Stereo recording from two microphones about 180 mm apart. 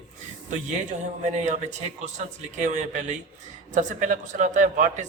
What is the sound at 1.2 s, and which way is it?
A man's voice, 40° right (ahead or behind).